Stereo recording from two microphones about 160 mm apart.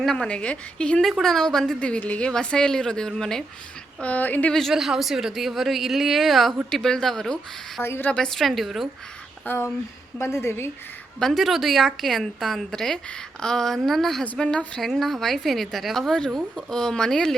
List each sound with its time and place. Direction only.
0.0 s a woman's voice: 5° left (ahead or behind)
7.8 s a woman's voice: 15° left (ahead or behind)
9.5 s a woman's voice: 10° left (ahead or behind)
11.2 s a woman's voice: centre (ahead or behind)